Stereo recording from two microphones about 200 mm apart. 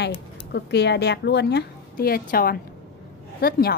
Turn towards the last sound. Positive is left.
turn(degrees=50)  # may be behind; listen again after turning